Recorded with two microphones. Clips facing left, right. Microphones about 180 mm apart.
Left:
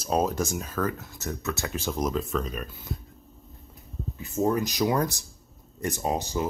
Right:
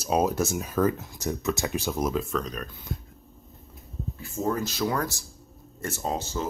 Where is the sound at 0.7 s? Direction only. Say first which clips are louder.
Right 6 dB; 20° right (ahead or behind).